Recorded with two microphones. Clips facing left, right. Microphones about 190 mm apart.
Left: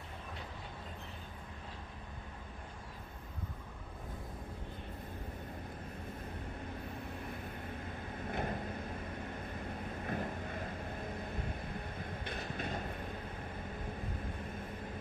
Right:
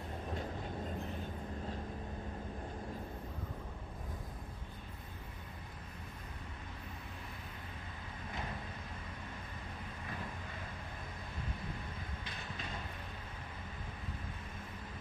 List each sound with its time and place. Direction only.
8.3 s vehicle: 55° left (ahead or behind)
10.0 s vehicle: 45° left (ahead or behind)
12.3 s train: 55° left (ahead or behind)